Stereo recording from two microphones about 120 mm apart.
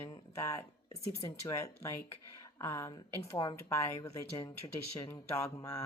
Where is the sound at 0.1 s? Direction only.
25° left (ahead or behind).